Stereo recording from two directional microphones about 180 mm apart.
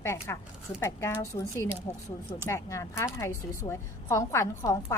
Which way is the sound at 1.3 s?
25° left (ahead or behind).